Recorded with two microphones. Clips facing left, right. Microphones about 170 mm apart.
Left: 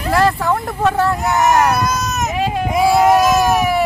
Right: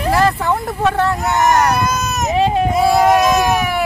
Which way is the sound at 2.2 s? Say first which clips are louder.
Right 6 dB; 25° right (ahead or behind).